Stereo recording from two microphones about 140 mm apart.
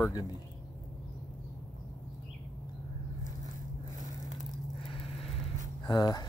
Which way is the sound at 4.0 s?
60° right (ahead or behind).